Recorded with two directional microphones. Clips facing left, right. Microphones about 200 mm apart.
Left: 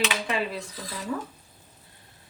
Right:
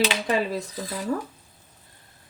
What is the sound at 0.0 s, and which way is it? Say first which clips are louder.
Dishes: right 4 dB; 40° right (ahead or behind).